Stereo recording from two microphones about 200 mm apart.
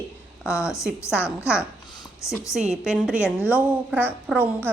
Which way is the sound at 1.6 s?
20° left (ahead or behind).